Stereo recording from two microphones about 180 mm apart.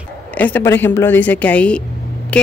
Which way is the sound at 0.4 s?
10° left (ahead or behind).